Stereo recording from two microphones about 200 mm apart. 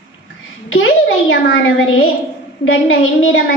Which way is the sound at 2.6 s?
85° left.